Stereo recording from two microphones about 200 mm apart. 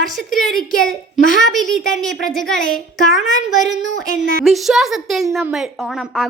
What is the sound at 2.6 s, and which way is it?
Speech, 45° left (ahead or behind).